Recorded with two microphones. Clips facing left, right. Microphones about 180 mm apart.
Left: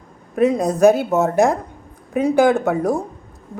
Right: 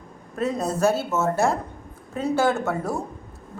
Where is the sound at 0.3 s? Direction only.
15° left (ahead or behind).